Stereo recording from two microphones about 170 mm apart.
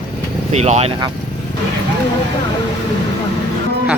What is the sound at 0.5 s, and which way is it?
Speech, 40° right (ahead or behind).